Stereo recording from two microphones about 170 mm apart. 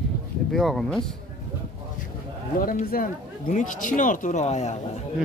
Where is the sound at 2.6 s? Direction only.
55° left (ahead or behind).